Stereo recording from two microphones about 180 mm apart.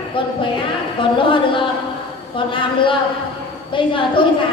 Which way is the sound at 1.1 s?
30° left (ahead or behind).